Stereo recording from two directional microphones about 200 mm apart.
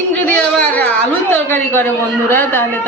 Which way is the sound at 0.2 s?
5° left (ahead or behind).